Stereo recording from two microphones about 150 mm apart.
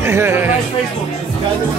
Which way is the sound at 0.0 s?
15° right (ahead or behind).